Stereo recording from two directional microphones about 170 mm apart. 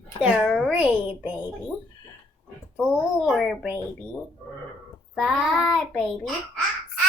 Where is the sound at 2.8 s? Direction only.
Centre (ahead or behind).